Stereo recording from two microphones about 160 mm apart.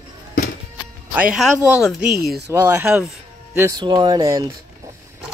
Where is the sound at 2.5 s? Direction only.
10° right (ahead or behind).